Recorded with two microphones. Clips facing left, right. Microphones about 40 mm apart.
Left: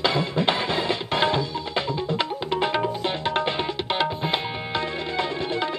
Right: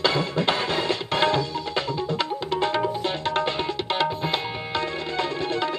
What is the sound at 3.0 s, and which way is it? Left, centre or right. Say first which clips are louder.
Tabla: even; centre.